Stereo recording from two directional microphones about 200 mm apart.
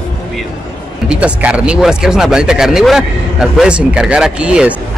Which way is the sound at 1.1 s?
5° right (ahead or behind).